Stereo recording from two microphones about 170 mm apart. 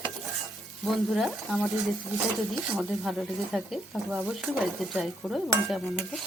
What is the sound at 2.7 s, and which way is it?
Speech, centre (ahead or behind).